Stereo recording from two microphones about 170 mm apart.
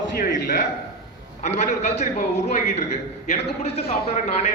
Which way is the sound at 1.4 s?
40° left (ahead or behind).